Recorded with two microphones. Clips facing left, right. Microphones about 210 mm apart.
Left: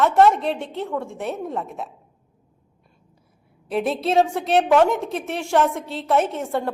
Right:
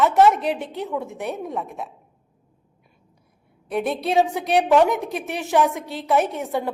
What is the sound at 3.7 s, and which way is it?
A woman's voice, centre (ahead or behind).